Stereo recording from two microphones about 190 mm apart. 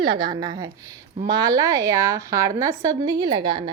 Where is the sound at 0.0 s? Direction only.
25° right (ahead or behind).